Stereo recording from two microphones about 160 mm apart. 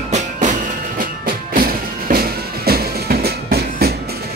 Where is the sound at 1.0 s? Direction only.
60° right (ahead or behind).